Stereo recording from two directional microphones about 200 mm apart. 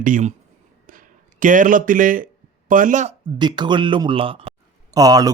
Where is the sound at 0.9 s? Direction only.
40° right (ahead or behind).